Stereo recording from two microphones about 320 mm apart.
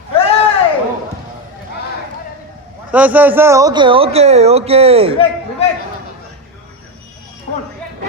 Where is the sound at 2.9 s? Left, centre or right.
Centre.